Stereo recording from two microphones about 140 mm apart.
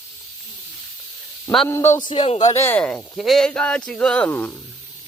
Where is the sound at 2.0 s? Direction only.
35° left (ahead or behind).